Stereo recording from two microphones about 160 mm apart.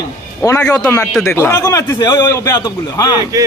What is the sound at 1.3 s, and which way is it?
A man's voice, 15° left (ahead or behind).